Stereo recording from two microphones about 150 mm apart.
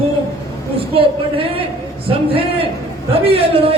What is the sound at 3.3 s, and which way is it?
Speech, 40° right (ahead or behind).